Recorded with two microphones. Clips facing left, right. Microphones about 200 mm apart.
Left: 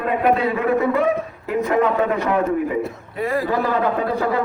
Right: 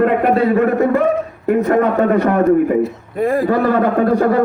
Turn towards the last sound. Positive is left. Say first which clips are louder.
# right 7 dB
turn(degrees=-50)  # may be behind; listen again after turning